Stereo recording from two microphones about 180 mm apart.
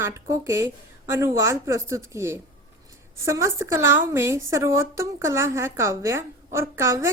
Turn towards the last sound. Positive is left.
turn(degrees=-15)  # may be behind; listen again after turning